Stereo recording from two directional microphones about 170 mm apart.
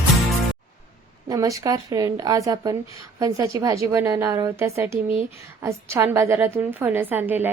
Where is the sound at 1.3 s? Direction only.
20° right (ahead or behind).